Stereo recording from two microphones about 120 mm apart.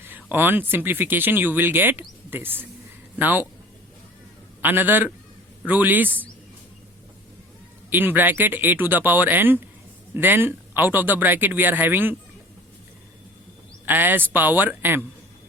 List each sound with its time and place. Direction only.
0.0 s speech: 15° right (ahead or behind)
4.6 s speech: 15° right (ahead or behind)
7.9 s speech: 15° right (ahead or behind)
13.8 s speech: 15° right (ahead or behind)